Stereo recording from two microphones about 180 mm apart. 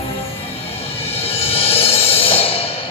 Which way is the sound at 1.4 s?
30° left (ahead or behind).